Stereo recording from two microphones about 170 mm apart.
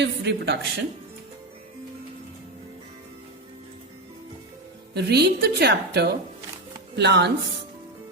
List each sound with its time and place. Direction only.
0.0 s a woman's voice: 90° right
4.9 s a woman's voice: 75° right (ahead or behind)
6.9 s speech: 90° right